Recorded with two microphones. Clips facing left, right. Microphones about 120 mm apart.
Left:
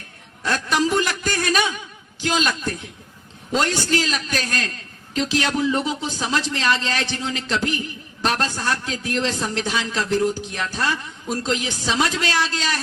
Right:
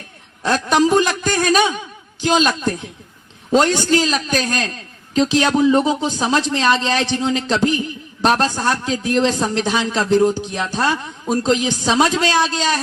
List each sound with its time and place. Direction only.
0.4 s a sound: 25° right (ahead or behind)
2.2 s a woman's voice: 25° right (ahead or behind)
4.4 s a man's voice: 35° right (ahead or behind)
4.7 s a man's voice: 20° right (ahead or behind)